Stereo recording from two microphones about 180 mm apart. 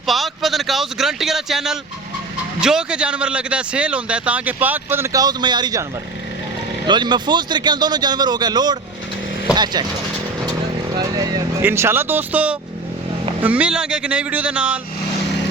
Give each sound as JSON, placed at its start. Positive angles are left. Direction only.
{"t": 0.0, "sound": "a sound", "side_deg": 0}
{"t": 2.6, "sound": "a man's voice", "side_deg": -5}
{"t": 6.8, "sound": "a man's voice", "side_deg": -25}
{"t": 10.9, "sound": "a man's voice", "side_deg": -20}